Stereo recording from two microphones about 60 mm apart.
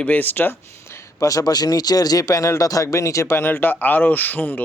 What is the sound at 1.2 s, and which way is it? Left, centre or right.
A man's voice, left.